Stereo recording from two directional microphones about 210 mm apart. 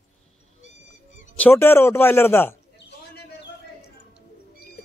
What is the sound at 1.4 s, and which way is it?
A man's voice, 10° left (ahead or behind).